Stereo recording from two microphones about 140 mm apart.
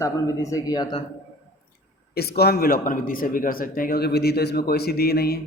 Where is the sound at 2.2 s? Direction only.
90° left.